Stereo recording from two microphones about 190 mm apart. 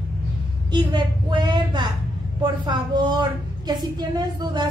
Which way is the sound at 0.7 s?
25° right (ahead or behind).